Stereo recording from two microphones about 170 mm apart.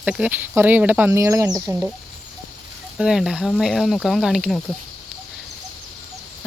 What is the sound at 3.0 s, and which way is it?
Speech, 5° right (ahead or behind).